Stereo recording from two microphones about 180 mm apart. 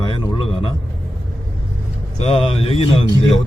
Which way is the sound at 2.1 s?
35° left (ahead or behind).